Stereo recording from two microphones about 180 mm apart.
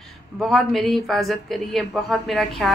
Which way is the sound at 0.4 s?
Centre (ahead or behind).